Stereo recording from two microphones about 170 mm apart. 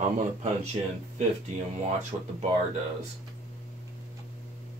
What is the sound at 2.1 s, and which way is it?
Speech, 25° right (ahead or behind).